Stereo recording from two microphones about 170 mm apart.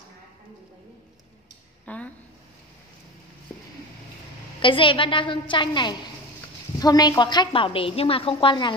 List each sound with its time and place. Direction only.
1.9 s a woman's voice: 10° left (ahead or behind)
4.6 s a woman's voice: 30° left (ahead or behind)